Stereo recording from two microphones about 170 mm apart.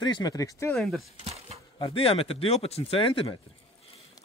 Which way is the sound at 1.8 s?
35° left (ahead or behind).